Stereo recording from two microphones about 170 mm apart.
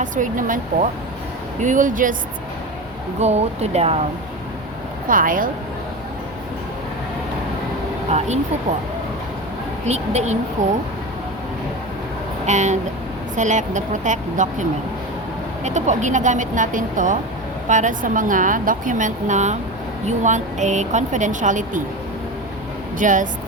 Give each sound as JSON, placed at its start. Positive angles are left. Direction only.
{"t": 0.0, "sound": "a woman's voice", "side_deg": -50}
{"t": 3.2, "sound": "speech", "side_deg": -40}
{"t": 5.0, "sound": "a woman's voice", "side_deg": -55}
{"t": 9.8, "sound": "a woman's voice", "side_deg": -40}
{"t": 12.5, "sound": "a woman's voice", "side_deg": -45}
{"t": 23.0, "sound": "a woman's voice", "side_deg": -50}